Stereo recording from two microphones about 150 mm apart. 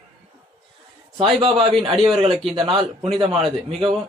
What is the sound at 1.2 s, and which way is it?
Speech, 40° right (ahead or behind).